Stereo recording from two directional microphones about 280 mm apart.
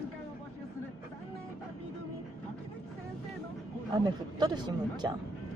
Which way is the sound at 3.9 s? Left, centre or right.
Centre.